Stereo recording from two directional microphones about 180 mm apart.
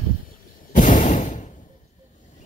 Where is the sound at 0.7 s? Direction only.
45° left (ahead or behind).